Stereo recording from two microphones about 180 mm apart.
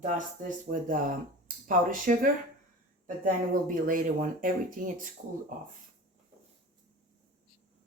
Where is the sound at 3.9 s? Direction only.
50° right (ahead or behind).